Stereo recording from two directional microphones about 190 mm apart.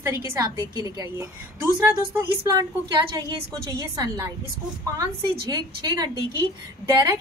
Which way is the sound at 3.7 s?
15° right (ahead or behind).